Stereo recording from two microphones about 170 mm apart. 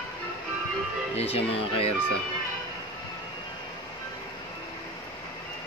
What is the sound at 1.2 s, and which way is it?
Speech, 35° left (ahead or behind).